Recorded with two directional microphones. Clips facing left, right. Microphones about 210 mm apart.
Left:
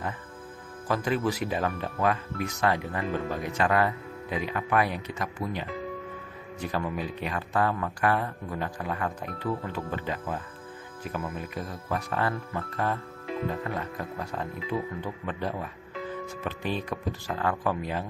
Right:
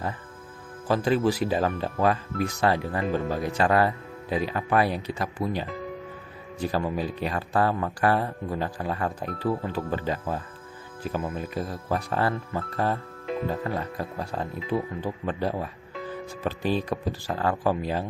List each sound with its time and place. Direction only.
0.9 s speech: 30° right (ahead or behind)